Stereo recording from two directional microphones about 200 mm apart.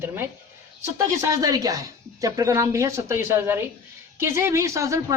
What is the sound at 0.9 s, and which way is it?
A woman's voice, 15° right (ahead or behind).